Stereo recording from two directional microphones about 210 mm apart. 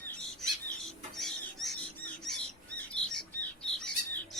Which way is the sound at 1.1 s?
Centre (ahead or behind).